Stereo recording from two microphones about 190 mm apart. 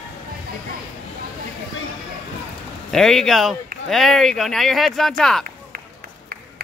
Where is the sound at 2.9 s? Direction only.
Centre (ahead or behind).